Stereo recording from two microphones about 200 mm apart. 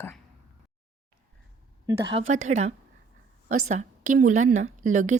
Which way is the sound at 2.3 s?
35° right (ahead or behind).